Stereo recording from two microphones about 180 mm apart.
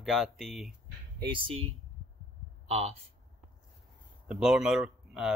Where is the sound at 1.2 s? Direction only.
30° right (ahead or behind).